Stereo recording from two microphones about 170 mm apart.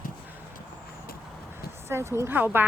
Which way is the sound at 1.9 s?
15° right (ahead or behind).